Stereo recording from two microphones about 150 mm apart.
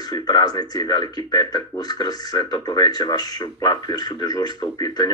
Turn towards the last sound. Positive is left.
turn(degrees=25)  # may be behind; listen again after turning